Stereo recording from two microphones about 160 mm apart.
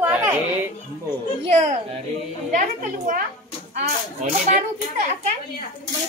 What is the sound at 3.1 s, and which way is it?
Speech, 55° right (ahead or behind).